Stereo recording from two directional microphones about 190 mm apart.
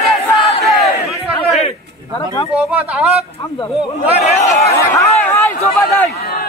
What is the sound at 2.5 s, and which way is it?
Speech, 5° right (ahead or behind).